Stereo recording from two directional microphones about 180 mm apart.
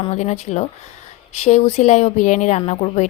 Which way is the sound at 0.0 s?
35° left (ahead or behind).